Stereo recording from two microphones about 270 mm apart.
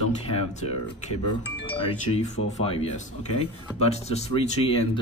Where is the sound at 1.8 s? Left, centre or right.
Left.